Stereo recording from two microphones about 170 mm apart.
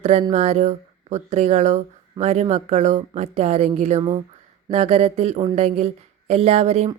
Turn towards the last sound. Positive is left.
turn(degrees=-40)  # may be behind; listen again after turning